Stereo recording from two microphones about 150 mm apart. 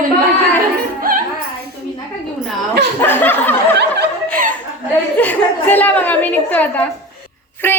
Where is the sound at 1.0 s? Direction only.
70° right (ahead or behind).